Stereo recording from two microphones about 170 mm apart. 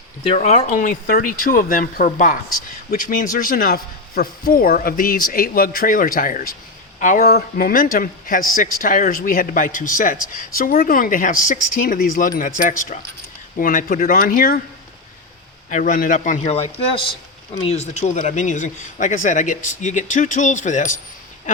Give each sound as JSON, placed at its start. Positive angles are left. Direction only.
{"t": 0.3, "sound": "a man's voice", "side_deg": 40}
{"t": 15.7, "sound": "a man's voice", "side_deg": 50}